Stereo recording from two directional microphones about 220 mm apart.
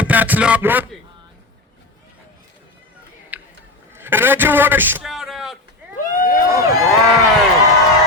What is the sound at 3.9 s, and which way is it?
A man's voice, 10° right (ahead or behind).